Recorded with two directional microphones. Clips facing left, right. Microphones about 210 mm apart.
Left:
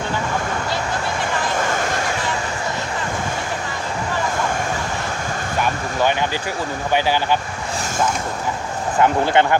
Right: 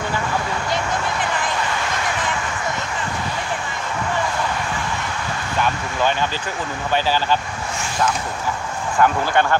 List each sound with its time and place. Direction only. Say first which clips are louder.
6.9 s speech: left 1 dB; 15° left (ahead or behind)
9.0 s speech: left 2 dB; 20° left (ahead or behind)